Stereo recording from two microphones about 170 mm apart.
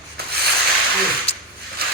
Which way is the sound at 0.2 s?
65° right (ahead or behind).